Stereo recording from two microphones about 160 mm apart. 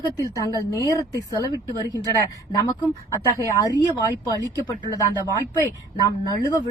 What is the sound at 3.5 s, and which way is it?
Speech, 25° left (ahead or behind).